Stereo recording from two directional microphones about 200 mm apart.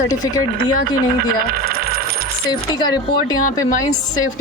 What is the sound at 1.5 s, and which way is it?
Coin, 50° right (ahead or behind).